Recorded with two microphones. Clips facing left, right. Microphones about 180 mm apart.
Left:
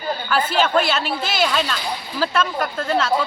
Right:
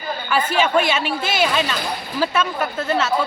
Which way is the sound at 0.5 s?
10° right (ahead or behind).